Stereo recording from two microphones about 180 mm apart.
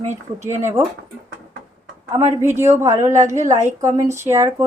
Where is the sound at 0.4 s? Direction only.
15° right (ahead or behind).